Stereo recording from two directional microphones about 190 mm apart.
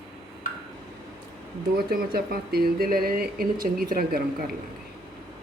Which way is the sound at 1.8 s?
50° right (ahead or behind).